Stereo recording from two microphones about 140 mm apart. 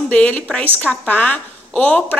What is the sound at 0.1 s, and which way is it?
A woman's voice, 10° left (ahead or behind).